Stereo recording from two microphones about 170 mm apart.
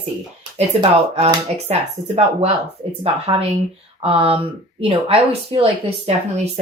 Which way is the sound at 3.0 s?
35° right (ahead or behind).